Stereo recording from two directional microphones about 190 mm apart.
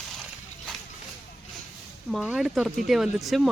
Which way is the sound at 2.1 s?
Centre (ahead or behind).